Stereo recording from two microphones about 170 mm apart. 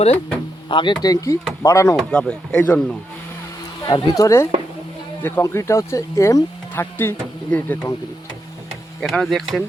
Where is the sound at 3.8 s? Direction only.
20° left (ahead or behind).